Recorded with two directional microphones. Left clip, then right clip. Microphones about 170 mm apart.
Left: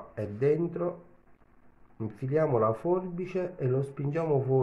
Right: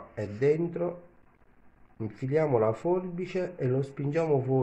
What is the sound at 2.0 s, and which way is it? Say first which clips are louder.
Speech: even; centre (ahead or behind).